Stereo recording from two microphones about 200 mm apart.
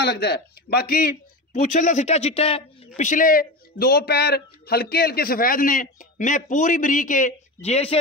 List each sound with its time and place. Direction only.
0.0 s a man's voice: 55° left (ahead or behind); by 2.6 s 30° left (ahead or behind)
3.0 s a man's voice: 40° left (ahead or behind)